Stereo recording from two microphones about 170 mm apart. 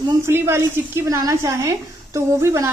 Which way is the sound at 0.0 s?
15° right (ahead or behind).